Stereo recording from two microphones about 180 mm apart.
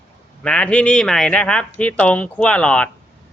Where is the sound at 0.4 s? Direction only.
5° left (ahead or behind).